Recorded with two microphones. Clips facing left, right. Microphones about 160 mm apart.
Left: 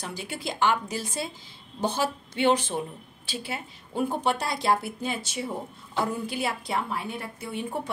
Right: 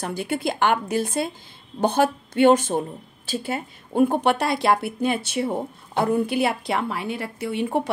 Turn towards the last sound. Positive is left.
turn(degrees=-75)  # may be behind; listen again after turning